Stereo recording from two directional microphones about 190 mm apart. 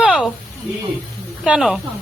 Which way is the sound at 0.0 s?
5° right (ahead or behind).